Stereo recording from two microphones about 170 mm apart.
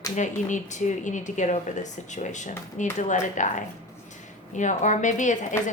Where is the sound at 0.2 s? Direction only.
45° left (ahead or behind).